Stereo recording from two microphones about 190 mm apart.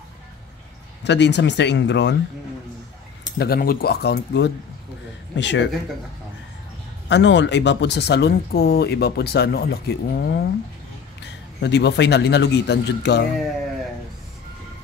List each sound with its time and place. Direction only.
1.0 s speech: 65° left (ahead or behind)
3.3 s speech: 55° left (ahead or behind); by 5.7 s 70° left (ahead or behind)
7.1 s speech: 70° left (ahead or behind)
11.6 s speech: 65° left (ahead or behind)